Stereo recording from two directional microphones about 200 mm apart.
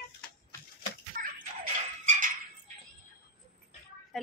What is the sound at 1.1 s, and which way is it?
Bathtub, 40° right (ahead or behind).